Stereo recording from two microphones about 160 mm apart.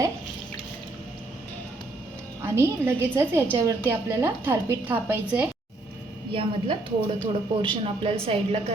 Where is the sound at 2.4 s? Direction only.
15° right (ahead or behind).